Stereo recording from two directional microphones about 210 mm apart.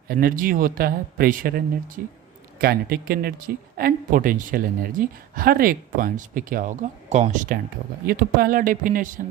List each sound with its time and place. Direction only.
0.1 s speech: 45° right (ahead or behind)